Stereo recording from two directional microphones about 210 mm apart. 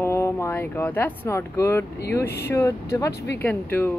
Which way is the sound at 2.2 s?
50° left (ahead or behind).